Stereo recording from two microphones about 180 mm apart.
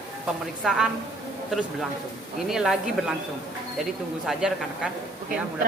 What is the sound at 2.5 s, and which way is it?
Speech, centre (ahead or behind).